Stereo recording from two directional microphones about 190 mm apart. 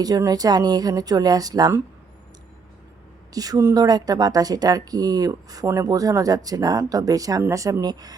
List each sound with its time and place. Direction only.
0.0 s speech: 20° right (ahead or behind)
3.3 s speech: 20° right (ahead or behind)